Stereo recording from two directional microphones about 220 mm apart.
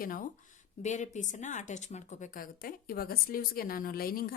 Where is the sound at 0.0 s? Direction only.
40° left (ahead or behind).